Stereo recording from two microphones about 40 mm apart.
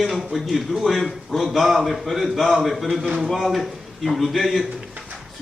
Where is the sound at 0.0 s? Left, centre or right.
Centre.